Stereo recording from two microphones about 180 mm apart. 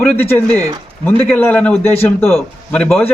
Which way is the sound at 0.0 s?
10° left (ahead or behind).